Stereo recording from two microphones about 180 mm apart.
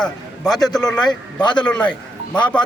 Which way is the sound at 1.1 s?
25° left (ahead or behind).